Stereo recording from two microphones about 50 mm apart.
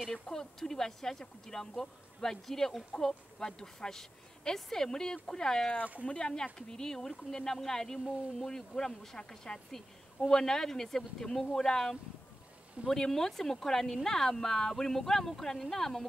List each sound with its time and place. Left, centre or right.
0.1 s speech: centre